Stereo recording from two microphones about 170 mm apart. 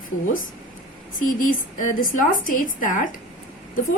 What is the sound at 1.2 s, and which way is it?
A woman's voice, 50° left (ahead or behind).